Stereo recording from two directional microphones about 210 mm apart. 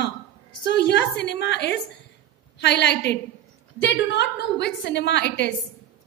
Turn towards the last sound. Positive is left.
turn(degrees=55)  # may be behind; listen again after turning